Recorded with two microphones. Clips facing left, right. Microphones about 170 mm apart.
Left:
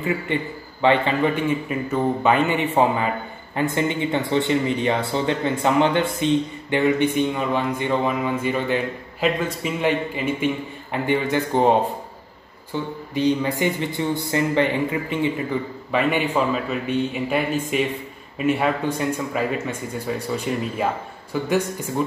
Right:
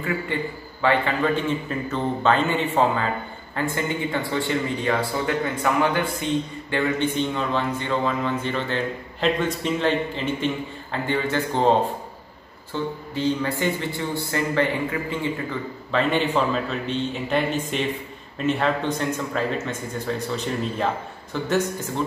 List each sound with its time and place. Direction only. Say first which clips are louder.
0.0 s a man's voice: left 2 dB; 20° left (ahead or behind)